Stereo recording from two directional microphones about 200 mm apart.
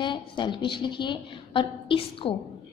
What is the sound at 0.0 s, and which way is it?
A woman's voice, 25° left (ahead or behind).